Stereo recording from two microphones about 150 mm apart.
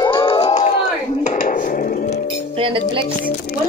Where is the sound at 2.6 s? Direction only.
35° right (ahead or behind).